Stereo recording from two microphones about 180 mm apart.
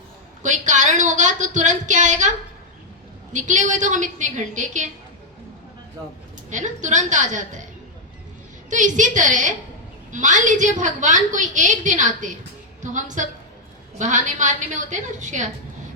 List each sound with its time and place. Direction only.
0.4 s a woman's voice: 45° right (ahead or behind)
3.3 s a woman's voice: 40° right (ahead or behind)
6.5 s a woman's voice: 45° right (ahead or behind)
8.7 s a woman's voice: 45° right (ahead or behind)